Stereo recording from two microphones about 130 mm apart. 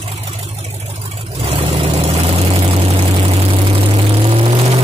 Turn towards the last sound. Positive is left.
turn(degrees=-45)  # may be behind; listen again after turning